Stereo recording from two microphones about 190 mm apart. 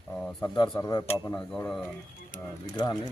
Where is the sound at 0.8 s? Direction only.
15° left (ahead or behind).